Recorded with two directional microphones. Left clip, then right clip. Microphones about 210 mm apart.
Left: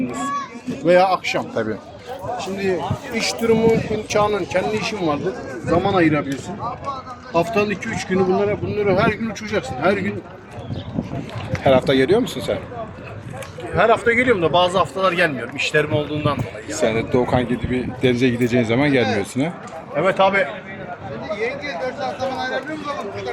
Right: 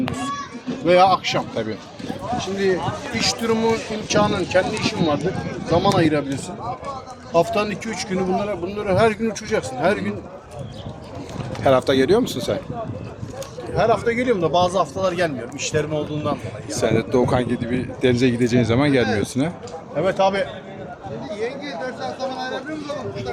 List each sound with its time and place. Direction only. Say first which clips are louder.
0.9 s a man's voice: even; centre (ahead or behind)
5.7 s speech: left 1 dB; 10° right (ahead or behind)
7.3 s speech: even; 35° right (ahead or behind)
8.9 s speech: right 2 dB; 50° right (ahead or behind)
11.6 s a man's voice: left 1 dB; 5° right (ahead or behind)
13.7 s a man's voice: left 3 dB; 10° right (ahead or behind)
21.3 s a sound: left 3 dB; 55° right (ahead or behind)